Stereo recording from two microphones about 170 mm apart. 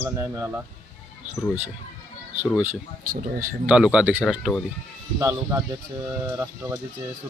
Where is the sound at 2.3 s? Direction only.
10° right (ahead or behind).